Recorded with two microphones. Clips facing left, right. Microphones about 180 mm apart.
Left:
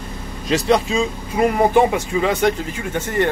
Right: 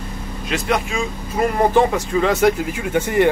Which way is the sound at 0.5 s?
30° left (ahead or behind).